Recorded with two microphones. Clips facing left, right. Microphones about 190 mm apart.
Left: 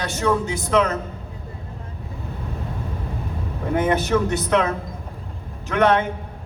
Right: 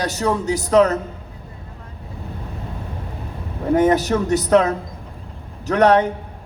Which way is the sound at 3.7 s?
40° right (ahead or behind).